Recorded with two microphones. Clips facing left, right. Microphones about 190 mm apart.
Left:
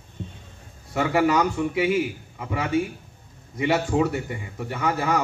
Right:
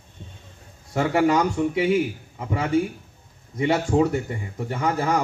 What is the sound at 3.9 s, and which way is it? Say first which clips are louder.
Speech: right 2 dB; 35° right (ahead or behind).